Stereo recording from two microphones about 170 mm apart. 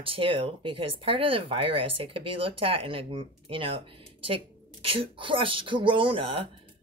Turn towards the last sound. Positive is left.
turn(degrees=-30)  # may be behind; listen again after turning